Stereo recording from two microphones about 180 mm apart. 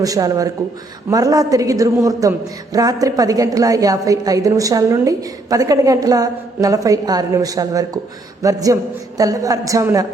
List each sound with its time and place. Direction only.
0.0 s a woman's voice: 20° right (ahead or behind)